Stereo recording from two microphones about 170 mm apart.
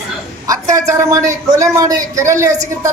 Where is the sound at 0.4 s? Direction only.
20° right (ahead or behind).